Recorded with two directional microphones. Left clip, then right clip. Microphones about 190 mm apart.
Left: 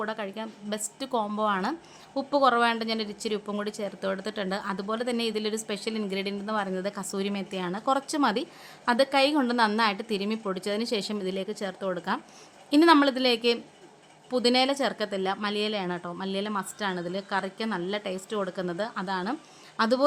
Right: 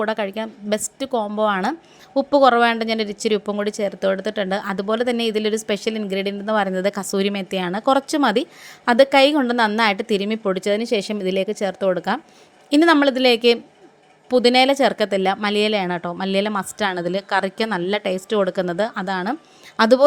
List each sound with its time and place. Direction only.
0.0 s speech: 30° right (ahead or behind)